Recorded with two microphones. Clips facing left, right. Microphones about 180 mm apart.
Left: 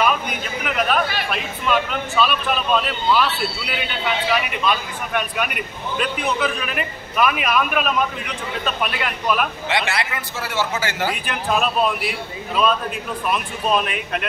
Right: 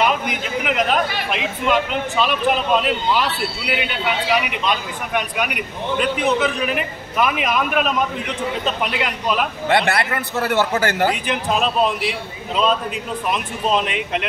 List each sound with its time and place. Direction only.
0.7 s chatter: 20° right (ahead or behind)
1.7 s a man's voice: 20° right (ahead or behind)
9.7 s a man's voice: 55° right (ahead or behind)
11.1 s a man's voice: 20° right (ahead or behind)